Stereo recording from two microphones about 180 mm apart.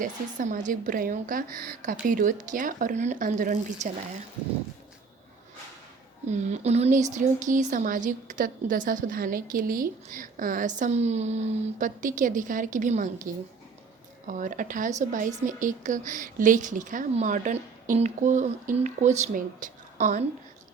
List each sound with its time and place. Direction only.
0.0 s speech: 50° right (ahead or behind)
6.2 s speech: 40° right (ahead or behind)